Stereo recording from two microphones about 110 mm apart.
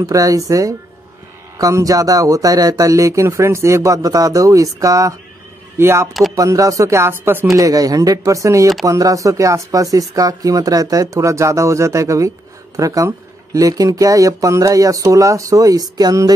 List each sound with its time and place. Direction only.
0.0 s speech: 30° right (ahead or behind)
7.5 s speech: 30° right (ahead or behind)